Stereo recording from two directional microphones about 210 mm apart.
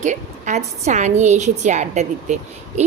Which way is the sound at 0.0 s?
35° right (ahead or behind).